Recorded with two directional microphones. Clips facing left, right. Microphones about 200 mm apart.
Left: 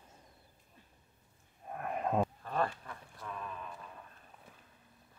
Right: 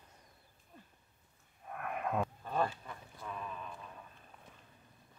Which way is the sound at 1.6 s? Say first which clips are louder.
Left 3 dB; 30° left (ahead or behind).